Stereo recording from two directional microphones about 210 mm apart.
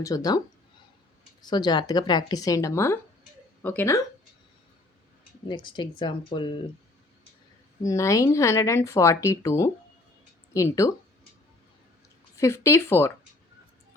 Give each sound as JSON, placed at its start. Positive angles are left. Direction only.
{"t": 0.0, "sound": "speech", "side_deg": 15}
{"t": 5.5, "sound": "speech", "side_deg": 20}
{"t": 7.8, "sound": "speech", "side_deg": 15}
{"t": 12.4, "sound": "speech", "side_deg": 15}